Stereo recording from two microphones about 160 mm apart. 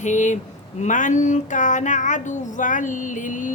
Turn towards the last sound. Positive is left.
turn(degrees=55)  # may be behind; listen again after turning